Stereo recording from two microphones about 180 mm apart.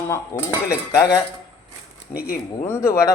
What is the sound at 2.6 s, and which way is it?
Speech, 15° left (ahead or behind).